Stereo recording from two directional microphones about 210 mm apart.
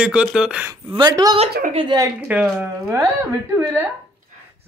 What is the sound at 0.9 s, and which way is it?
Speech, 20° right (ahead or behind).